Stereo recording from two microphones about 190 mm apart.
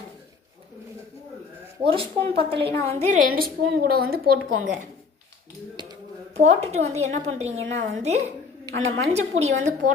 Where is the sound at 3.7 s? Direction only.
55° right (ahead or behind).